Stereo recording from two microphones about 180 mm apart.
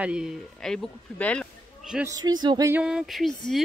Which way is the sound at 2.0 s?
20° right (ahead or behind).